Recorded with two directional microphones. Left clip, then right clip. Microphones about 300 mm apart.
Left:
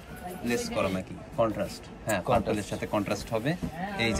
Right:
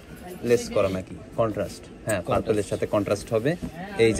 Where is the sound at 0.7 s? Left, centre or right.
Centre.